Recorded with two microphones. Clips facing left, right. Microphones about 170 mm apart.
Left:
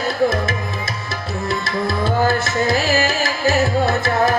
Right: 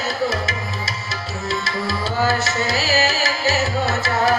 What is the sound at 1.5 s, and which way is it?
Music, 55° left (ahead or behind).